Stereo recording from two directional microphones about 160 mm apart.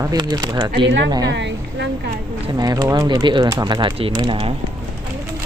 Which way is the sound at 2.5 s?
25° right (ahead or behind).